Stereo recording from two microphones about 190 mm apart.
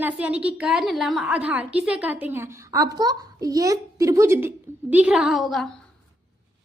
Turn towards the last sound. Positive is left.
turn(degrees=0)  # may be behind; listen again after turning